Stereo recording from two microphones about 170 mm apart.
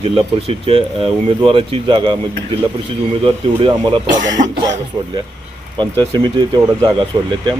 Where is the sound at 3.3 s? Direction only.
30° right (ahead or behind).